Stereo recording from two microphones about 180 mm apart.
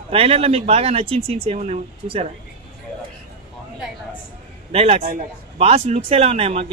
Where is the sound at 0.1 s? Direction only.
35° right (ahead or behind).